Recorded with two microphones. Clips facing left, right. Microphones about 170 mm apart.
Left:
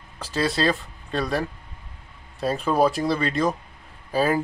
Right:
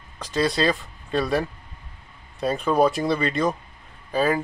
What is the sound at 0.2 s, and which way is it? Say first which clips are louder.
Speech: right 1 dB; 5° left (ahead or behind).